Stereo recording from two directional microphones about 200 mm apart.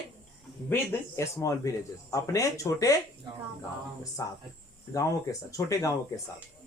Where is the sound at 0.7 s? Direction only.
10° left (ahead or behind).